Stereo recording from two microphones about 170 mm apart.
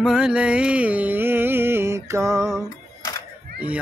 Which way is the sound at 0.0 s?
5° right (ahead or behind).